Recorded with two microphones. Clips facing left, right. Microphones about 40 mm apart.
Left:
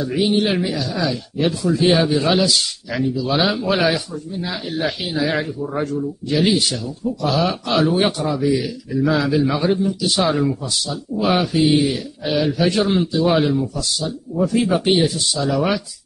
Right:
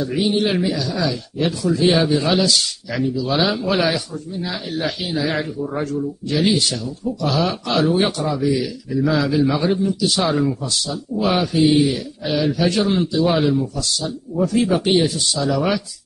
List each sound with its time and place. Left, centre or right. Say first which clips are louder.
0.0 s a man's voice: left 1 dB; centre
3.8 s a man's voice: left 2 dB; centre
11.5 s a man's voice: right 1 dB; centre
12.6 s a man's voice: left 1 dB; centre